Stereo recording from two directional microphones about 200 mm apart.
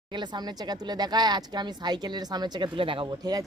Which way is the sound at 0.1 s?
20° right (ahead or behind).